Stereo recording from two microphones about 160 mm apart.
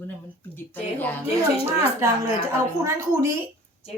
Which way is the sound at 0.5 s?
10° left (ahead or behind).